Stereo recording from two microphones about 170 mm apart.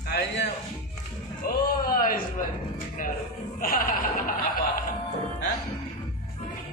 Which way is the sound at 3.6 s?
55° left (ahead or behind).